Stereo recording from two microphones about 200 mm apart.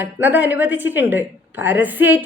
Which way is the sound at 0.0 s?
10° right (ahead or behind).